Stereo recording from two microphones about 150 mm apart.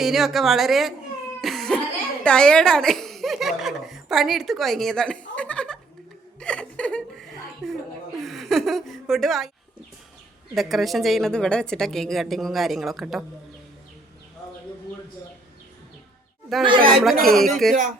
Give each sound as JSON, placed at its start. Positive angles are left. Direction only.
{"t": 0.0, "sound": "a woman's voice", "side_deg": 0}
{"t": 1.4, "sound": "cough", "side_deg": 0}
{"t": 2.2, "sound": "speech", "side_deg": 5}
{"t": 5.3, "sound": "chuckle", "side_deg": 10}
{"t": 10.5, "sound": "a woman's voice", "side_deg": 0}
{"t": 16.6, "sound": "speech", "side_deg": -35}
{"t": 17.0, "sound": "a woman's voice", "side_deg": 0}